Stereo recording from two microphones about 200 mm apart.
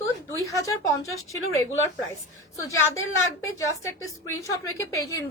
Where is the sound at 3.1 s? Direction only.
80° left.